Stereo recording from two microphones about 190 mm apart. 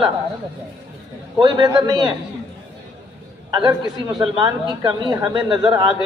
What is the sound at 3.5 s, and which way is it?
A man's voice, 20° right (ahead or behind).